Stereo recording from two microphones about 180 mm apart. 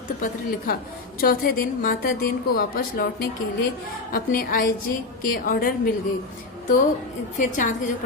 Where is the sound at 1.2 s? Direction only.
55° left (ahead or behind).